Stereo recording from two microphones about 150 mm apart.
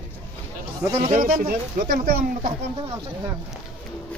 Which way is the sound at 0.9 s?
40° right (ahead or behind).